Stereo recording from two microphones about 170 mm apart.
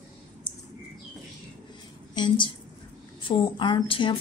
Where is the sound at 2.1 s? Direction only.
25° left (ahead or behind).